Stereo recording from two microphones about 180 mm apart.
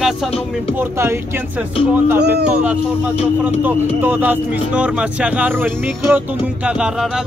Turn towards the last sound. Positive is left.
turn(degrees=-5)  # may be behind; listen again after turning